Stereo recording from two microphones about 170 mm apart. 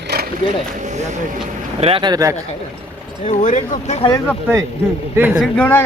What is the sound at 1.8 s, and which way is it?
Speech, 30° right (ahead or behind).